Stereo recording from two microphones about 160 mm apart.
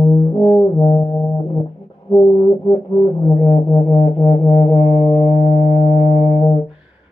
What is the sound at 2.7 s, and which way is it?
Music, 30° left (ahead or behind).